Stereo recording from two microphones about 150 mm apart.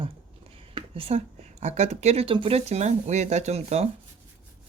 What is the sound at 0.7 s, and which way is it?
A woman's voice, 40° right (ahead or behind).